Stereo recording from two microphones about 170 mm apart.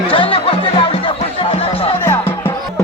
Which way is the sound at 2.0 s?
10° left (ahead or behind).